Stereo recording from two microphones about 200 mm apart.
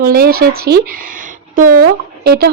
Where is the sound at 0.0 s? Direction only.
50° right (ahead or behind).